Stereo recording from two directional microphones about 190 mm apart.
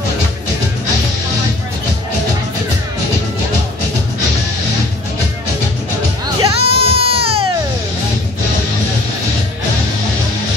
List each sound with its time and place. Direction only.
6.2 s music: 30° right (ahead or behind)